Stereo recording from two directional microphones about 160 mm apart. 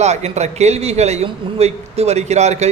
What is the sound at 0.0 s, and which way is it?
A man's voice, 45° right (ahead or behind).